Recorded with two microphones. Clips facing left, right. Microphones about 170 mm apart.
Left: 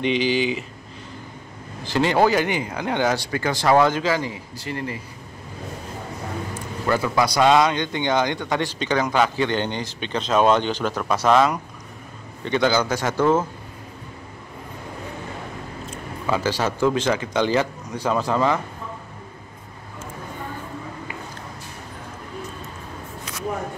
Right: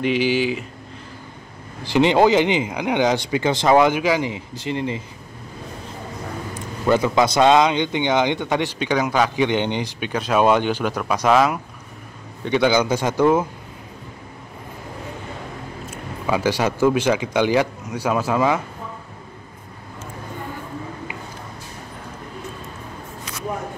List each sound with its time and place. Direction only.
0.0 s speech: 10° right (ahead or behind)
1.9 s speech: 20° right (ahead or behind)
6.5 s speech: 20° right (ahead or behind)
16.3 s speech: 15° right (ahead or behind)